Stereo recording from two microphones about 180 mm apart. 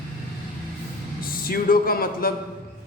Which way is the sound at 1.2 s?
55° left (ahead or behind).